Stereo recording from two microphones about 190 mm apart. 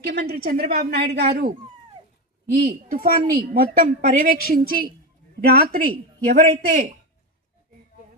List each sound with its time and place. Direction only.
0.0 s a woman's voice: 55° right (ahead or behind)
2.6 s a woman's voice: 50° right (ahead or behind)